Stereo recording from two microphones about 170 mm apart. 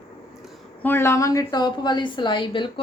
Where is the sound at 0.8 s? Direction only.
15° left (ahead or behind).